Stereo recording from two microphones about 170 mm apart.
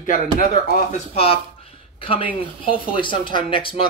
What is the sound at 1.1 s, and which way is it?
Speech, 35° left (ahead or behind).